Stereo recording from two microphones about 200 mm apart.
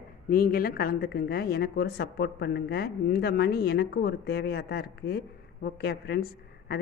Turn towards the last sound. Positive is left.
turn(degrees=55)  # may be behind; listen again after turning